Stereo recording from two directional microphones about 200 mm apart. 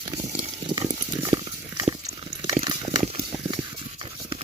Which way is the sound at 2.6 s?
20° right (ahead or behind).